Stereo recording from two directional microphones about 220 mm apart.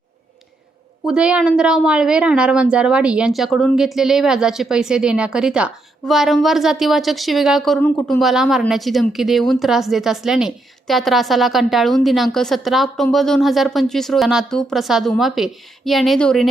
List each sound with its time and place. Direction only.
1.0 s a woman's voice: 5° right (ahead or behind)
8.2 s a woman's voice: centre (ahead or behind)